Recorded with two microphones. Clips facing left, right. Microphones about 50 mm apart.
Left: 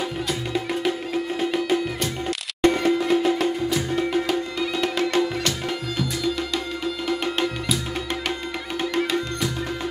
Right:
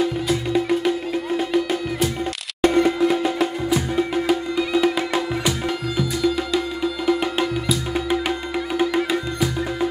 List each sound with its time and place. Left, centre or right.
0.0 s music: centre